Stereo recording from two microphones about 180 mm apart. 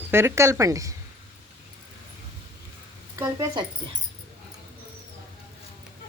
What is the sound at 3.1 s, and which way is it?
Speech, 15° right (ahead or behind).